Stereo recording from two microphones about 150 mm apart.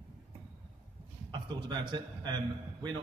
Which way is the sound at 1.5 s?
30° right (ahead or behind).